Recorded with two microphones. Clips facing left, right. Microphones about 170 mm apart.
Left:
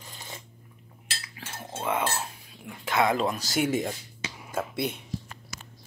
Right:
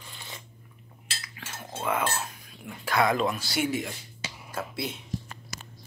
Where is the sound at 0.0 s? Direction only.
40° left (ahead or behind).